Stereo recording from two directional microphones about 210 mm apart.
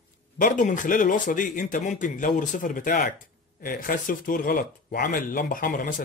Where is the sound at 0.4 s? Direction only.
40° left (ahead or behind).